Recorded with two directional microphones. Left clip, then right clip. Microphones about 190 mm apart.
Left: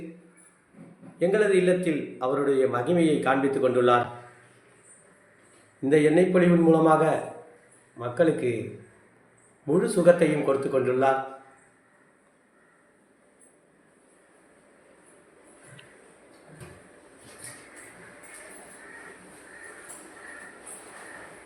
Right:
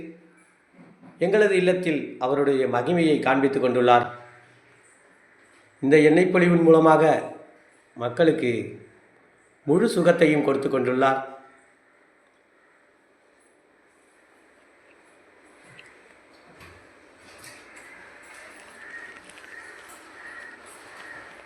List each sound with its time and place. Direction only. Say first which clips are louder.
1.2 s a man's voice: right 2 dB; 20° right (ahead or behind)
5.8 s a man's voice: right 4 dB; 30° right (ahead or behind)
9.6 s a man's voice: even; 35° right (ahead or behind)